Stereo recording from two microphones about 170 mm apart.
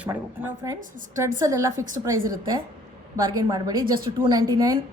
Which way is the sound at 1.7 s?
50° right (ahead or behind).